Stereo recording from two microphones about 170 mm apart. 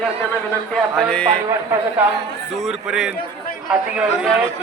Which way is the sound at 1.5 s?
15° right (ahead or behind).